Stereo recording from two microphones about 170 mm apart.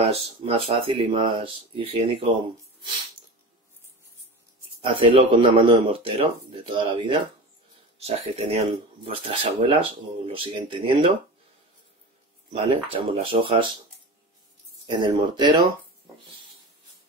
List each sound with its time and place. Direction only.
0.0 s speech: 35° right (ahead or behind)
4.8 s speech: 30° right (ahead or behind)
12.9 s speech: 35° right (ahead or behind)
14.9 s speech: 25° right (ahead or behind)